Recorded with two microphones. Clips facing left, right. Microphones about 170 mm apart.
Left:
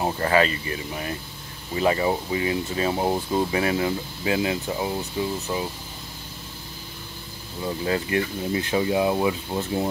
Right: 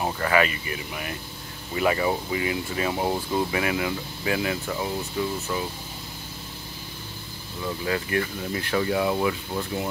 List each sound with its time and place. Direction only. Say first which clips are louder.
0.0 s speech: left 2 dB; 30° left (ahead or behind)
7.6 s speech: left 2 dB; 30° left (ahead or behind)